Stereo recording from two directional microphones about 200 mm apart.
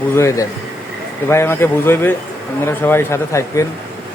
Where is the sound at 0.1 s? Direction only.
15° left (ahead or behind).